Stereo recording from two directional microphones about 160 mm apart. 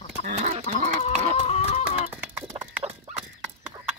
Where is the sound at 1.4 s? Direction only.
40° left (ahead or behind).